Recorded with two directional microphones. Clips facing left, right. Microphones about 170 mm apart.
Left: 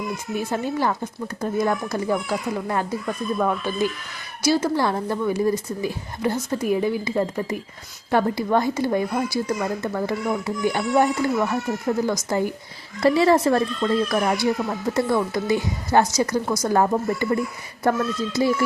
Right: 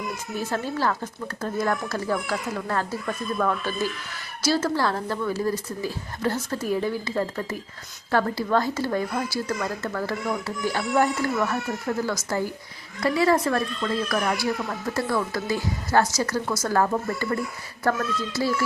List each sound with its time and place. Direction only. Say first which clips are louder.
0.3 s speech: left 3 dB; 15° left (ahead or behind)